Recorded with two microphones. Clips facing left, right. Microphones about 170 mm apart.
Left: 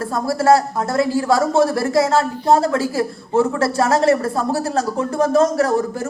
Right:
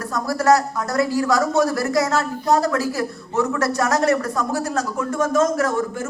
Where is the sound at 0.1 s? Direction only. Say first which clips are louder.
Left 2 dB; 30° left (ahead or behind).